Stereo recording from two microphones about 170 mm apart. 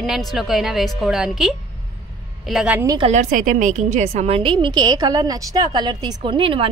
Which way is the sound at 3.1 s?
50° right (ahead or behind).